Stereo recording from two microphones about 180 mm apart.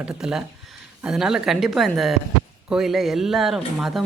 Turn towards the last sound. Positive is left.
turn(degrees=0)  # may be behind; listen again after turning